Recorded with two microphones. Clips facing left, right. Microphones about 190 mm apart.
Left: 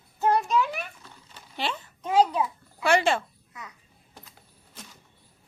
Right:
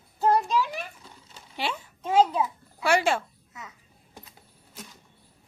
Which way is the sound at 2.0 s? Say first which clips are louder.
Even; 25° right (ahead or behind).